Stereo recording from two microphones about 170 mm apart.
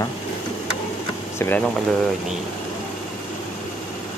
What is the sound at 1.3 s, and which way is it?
Speech, 10° left (ahead or behind).